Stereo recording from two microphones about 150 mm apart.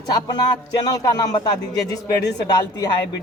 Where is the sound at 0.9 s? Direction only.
25° left (ahead or behind).